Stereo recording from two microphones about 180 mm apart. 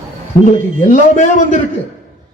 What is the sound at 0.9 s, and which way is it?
Speech, 45° left (ahead or behind).